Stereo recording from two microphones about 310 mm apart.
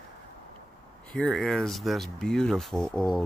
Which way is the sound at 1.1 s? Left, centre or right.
Centre.